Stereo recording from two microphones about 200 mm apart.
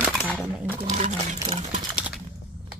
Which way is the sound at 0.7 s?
35° right (ahead or behind).